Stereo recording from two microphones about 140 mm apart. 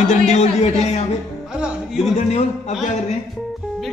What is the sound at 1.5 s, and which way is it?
Music, 5° right (ahead or behind).